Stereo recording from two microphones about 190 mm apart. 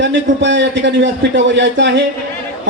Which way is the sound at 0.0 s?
65° right (ahead or behind).